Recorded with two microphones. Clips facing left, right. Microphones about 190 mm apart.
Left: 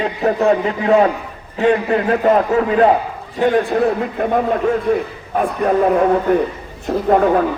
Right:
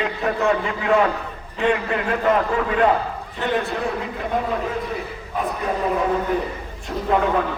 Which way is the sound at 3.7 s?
50° left (ahead or behind).